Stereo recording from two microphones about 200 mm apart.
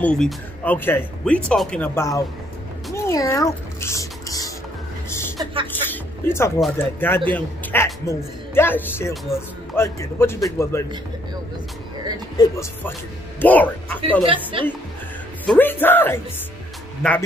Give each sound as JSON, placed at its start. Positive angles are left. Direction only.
{"t": 0.0, "sound": "speech", "side_deg": 5}
{"t": 2.9, "sound": "music", "side_deg": 15}
{"t": 5.4, "sound": "music", "side_deg": -25}
{"t": 5.7, "sound": "music", "side_deg": 10}
{"t": 6.6, "sound": "speech", "side_deg": 10}
{"t": 9.1, "sound": "speech", "side_deg": 0}
{"t": 9.8, "sound": "speech", "side_deg": 10}
{"t": 12.4, "sound": "speech", "side_deg": 15}
{"t": 14.2, "sound": "a woman's voice", "side_deg": -25}
{"t": 15.4, "sound": "speech", "side_deg": 10}